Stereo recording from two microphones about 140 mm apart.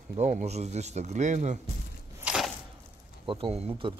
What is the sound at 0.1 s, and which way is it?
Speech, 60° right (ahead or behind).